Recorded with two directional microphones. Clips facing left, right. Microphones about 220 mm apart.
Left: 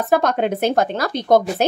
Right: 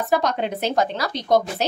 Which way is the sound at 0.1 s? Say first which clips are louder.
Left 5 dB; 55° left (ahead or behind).